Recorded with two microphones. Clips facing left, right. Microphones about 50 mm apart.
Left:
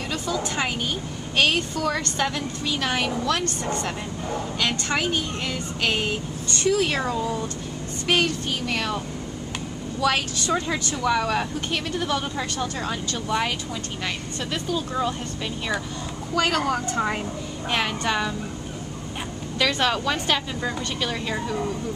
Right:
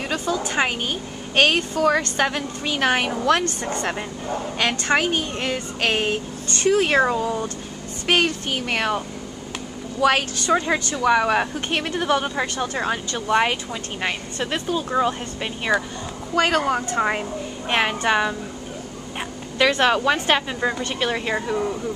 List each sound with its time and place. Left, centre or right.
0.1 s speech: right
1.3 s speech: right
1.8 s speech: right
4.6 s a woman's voice: right
19.8 s speech: right